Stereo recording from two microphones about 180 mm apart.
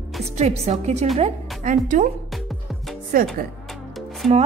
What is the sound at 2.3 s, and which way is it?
Music, centre (ahead or behind).